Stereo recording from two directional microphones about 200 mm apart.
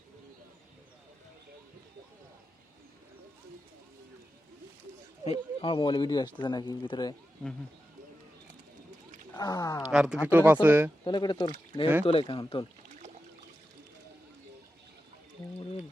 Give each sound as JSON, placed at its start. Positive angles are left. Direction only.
{"t": 5.2, "sound": "speech", "side_deg": 30}
{"t": 9.3, "sound": "speech", "side_deg": 20}
{"t": 9.9, "sound": "speech", "side_deg": -5}
{"t": 11.0, "sound": "speech", "side_deg": 20}